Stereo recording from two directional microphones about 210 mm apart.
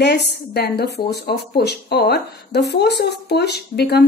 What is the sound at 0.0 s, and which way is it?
Speech, 50° left (ahead or behind).